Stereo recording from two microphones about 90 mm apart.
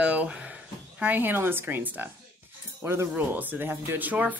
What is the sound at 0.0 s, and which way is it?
Speech, 15° right (ahead or behind).